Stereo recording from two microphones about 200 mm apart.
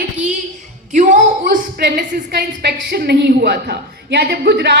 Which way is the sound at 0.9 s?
40° right (ahead or behind).